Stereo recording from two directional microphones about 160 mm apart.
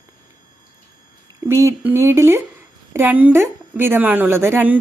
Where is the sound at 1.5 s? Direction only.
15° right (ahead or behind).